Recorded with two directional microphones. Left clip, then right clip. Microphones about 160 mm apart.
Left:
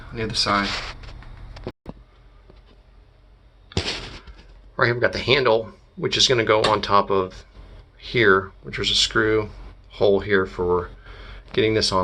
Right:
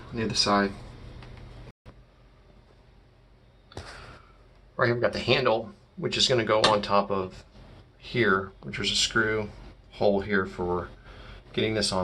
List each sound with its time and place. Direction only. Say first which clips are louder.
0.2 s speech: left 3 dB; centre (ahead or behind)
4.8 s speech: left 5 dB; 10° left (ahead or behind)